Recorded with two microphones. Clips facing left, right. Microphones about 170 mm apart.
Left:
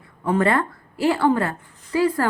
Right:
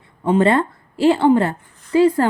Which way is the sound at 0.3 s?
25° right (ahead or behind).